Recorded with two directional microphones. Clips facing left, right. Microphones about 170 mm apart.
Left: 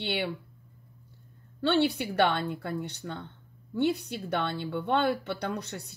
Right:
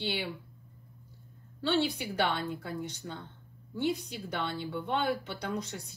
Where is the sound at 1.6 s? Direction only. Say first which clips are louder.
Left 4 dB; 65° left (ahead or behind).